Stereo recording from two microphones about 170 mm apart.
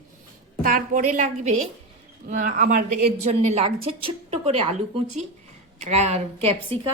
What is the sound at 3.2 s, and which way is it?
A woman's voice, 40° right (ahead or behind).